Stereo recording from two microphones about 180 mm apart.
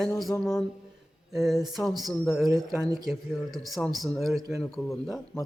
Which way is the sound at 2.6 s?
20° right (ahead or behind).